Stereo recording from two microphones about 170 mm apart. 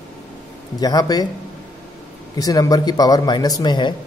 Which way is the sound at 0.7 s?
20° left (ahead or behind).